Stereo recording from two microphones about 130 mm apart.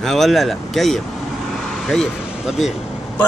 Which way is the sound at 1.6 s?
Centre (ahead or behind).